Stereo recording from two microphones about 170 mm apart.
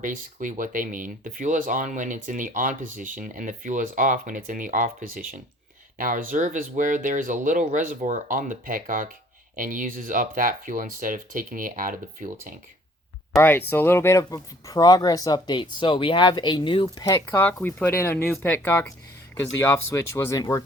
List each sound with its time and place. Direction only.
0.0 s speech: 50° right (ahead or behind)
13.3 s speech: 15° left (ahead or behind)